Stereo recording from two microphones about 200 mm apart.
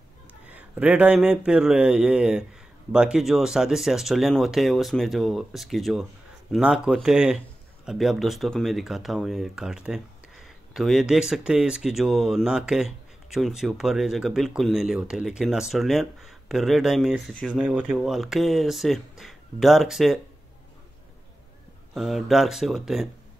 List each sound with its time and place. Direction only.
0.5 s speech: 5° right (ahead or behind)
21.9 s speech: centre (ahead or behind)